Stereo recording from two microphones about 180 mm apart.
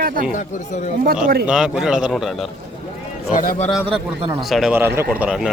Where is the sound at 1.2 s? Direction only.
60° right (ahead or behind).